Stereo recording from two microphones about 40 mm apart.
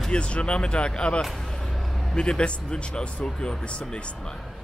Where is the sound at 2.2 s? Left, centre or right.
Left.